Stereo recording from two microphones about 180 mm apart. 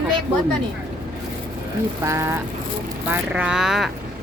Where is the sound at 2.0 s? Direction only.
15° right (ahead or behind).